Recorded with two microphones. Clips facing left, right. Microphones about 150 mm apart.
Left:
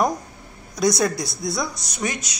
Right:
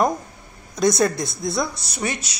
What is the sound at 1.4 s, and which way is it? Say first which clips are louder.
Speech: right 4 dB; centre (ahead or behind).